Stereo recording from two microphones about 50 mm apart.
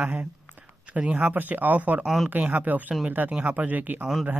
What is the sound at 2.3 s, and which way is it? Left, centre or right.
Speech, right.